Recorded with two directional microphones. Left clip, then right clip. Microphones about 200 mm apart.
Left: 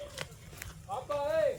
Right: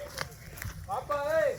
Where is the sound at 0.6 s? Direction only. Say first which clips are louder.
Right 4 dB; 5° right (ahead or behind).